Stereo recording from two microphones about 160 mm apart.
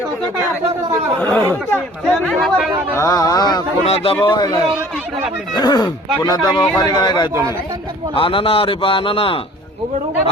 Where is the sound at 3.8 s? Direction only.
40° left (ahead or behind).